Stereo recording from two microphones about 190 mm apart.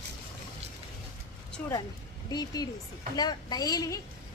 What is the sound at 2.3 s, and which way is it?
A woman's voice, 20° left (ahead or behind).